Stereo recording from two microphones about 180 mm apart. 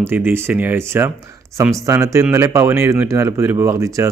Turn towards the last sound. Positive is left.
turn(degrees=-15)  # may be behind; listen again after turning